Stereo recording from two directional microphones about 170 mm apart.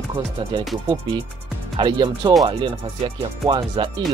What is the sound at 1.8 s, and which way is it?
Speech, 25° right (ahead or behind).